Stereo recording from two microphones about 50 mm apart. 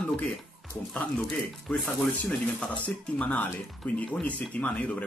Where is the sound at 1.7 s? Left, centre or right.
Centre.